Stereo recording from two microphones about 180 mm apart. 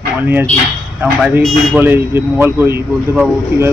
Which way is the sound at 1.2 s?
5° right (ahead or behind).